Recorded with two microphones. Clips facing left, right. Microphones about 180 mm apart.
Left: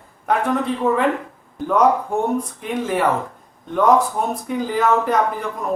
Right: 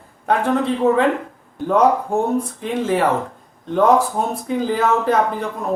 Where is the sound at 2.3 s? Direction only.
30° right (ahead or behind).